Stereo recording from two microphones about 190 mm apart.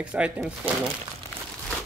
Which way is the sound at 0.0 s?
5° right (ahead or behind).